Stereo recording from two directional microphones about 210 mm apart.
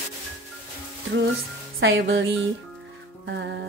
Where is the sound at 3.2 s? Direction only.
55° right (ahead or behind).